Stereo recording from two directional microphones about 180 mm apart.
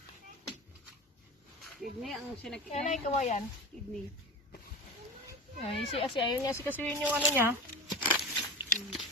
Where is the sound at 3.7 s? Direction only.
5° left (ahead or behind).